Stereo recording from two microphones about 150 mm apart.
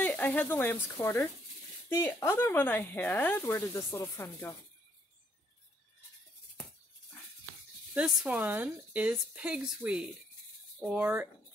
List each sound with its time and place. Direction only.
0.0 s speech: 10° left (ahead or behind)
7.9 s speech: 5° right (ahead or behind)